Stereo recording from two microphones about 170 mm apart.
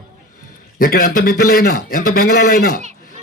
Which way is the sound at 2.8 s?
45° right (ahead or behind).